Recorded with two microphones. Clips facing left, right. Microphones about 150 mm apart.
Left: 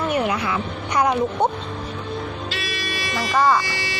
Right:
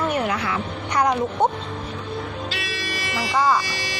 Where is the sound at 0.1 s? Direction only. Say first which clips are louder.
Left 2 dB; 10° left (ahead or behind).